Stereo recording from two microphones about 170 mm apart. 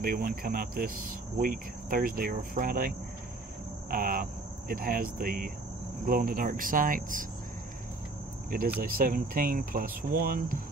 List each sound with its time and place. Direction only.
0.0 s speech: 55° right (ahead or behind)
3.9 s speech: 60° right (ahead or behind)
6.0 s cricket: 55° right (ahead or behind)
8.7 s speech: 60° right (ahead or behind)